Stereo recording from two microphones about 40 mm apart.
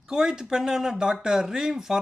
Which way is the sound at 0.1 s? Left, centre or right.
Centre.